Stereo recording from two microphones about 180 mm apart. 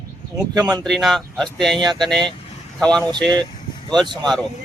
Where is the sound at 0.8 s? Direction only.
Centre (ahead or behind).